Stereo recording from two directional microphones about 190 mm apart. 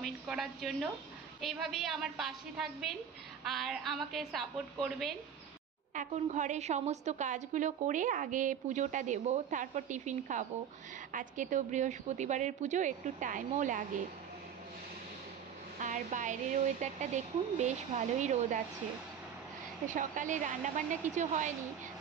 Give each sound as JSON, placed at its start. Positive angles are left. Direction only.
{"t": 0.0, "sound": "a woman's voice", "side_deg": 0}
{"t": 5.9, "sound": "a woman's voice", "side_deg": -40}
{"t": 15.8, "sound": "a woman's voice", "side_deg": -40}
{"t": 19.9, "sound": "a woman's voice", "side_deg": -40}